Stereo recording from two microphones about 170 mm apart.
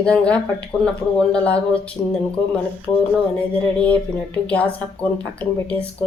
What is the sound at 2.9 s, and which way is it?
Speech, 20° left (ahead or behind).